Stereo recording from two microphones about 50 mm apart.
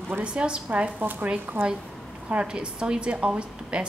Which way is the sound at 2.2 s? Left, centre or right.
Right.